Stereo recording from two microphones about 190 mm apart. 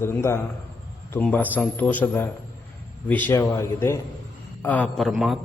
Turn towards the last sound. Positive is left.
turn(degrees=0)  # may be behind; listen again after turning